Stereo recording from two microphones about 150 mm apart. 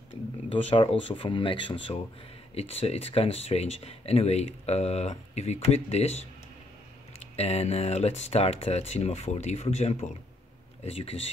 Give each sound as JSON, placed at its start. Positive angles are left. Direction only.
{"t": 0.5, "sound": "speech", "side_deg": 40}